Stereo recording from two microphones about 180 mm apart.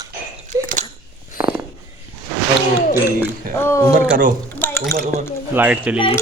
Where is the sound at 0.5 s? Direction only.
15° right (ahead or behind).